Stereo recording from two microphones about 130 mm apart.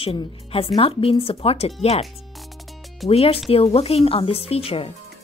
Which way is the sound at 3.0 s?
50° left (ahead or behind).